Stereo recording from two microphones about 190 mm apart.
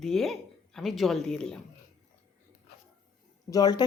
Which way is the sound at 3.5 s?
20° left (ahead or behind).